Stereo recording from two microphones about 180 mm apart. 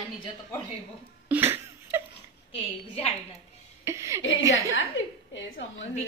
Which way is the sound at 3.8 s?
15° right (ahead or behind).